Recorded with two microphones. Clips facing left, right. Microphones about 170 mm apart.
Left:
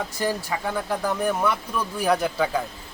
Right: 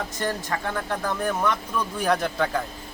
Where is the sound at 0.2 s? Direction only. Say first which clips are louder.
Left 2 dB; 10° left (ahead or behind).